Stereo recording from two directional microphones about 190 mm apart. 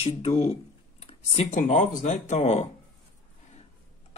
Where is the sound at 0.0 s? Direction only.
30° left (ahead or behind).